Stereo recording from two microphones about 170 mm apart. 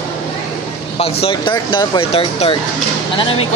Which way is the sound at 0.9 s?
35° left (ahead or behind).